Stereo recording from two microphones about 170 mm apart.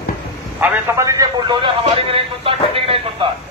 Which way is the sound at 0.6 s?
15° right (ahead or behind).